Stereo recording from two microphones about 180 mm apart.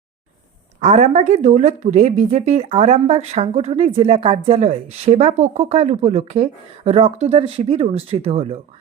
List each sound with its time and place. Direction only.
0.8 s speech: 40° right (ahead or behind)